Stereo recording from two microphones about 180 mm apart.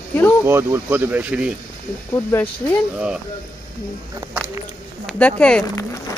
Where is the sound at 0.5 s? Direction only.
15° right (ahead or behind).